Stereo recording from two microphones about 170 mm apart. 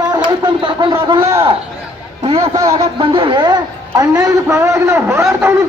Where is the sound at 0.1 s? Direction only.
25° right (ahead or behind).